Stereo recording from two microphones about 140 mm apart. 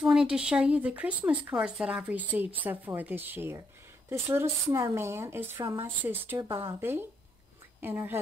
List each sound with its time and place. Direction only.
0.0 s a woman's voice: 5° right (ahead or behind)